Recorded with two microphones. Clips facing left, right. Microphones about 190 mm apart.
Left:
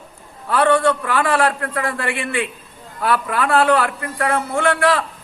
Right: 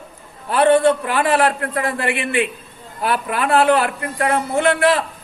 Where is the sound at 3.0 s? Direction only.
15° right (ahead or behind).